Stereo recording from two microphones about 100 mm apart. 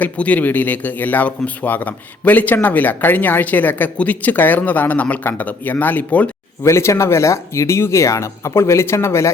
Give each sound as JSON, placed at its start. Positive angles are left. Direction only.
{"t": 0.0, "sound": "speech", "side_deg": 15}
{"t": 6.6, "sound": "speech", "side_deg": 25}